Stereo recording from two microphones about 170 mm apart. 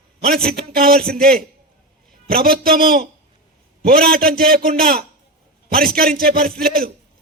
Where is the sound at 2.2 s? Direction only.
60° right (ahead or behind).